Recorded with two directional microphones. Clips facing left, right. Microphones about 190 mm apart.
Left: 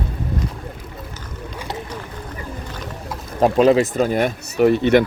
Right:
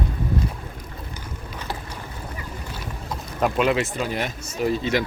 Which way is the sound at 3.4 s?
35° left (ahead or behind).